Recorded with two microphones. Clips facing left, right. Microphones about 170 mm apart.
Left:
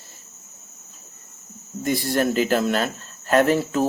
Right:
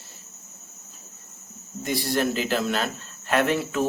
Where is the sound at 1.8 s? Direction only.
45° left (ahead or behind).